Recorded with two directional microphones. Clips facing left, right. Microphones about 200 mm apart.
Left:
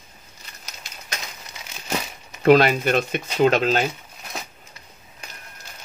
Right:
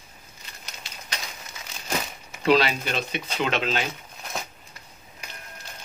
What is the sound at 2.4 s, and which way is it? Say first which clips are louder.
Speech: left 6 dB; 50° left (ahead or behind).